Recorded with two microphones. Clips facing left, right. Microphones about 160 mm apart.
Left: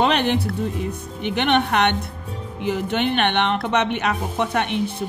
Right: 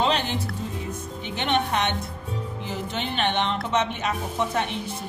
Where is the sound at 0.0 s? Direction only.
65° left (ahead or behind).